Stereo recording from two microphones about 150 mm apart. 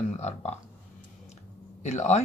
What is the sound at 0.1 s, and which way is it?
Speech, 45° left (ahead or behind).